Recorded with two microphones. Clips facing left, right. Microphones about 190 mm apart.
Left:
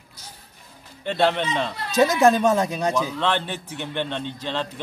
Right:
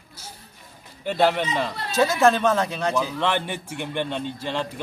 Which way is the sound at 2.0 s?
20° left (ahead or behind).